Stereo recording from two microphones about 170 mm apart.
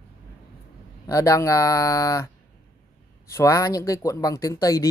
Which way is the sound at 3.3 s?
20° left (ahead or behind).